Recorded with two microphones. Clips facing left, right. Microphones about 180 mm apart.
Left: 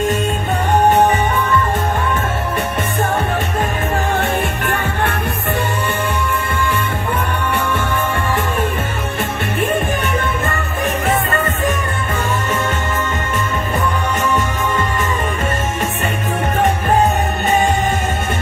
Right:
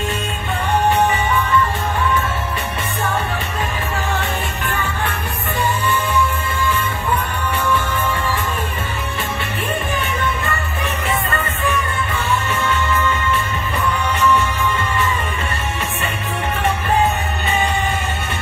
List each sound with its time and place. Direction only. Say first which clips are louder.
4.2 s music: left 5 dB; 60° left (ahead or behind)
12.3 s music: even; 45° left (ahead or behind)